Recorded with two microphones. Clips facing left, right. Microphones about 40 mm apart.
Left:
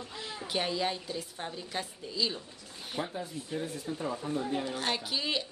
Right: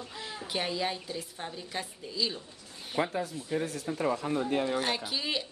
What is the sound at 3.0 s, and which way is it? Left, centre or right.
Speech, right.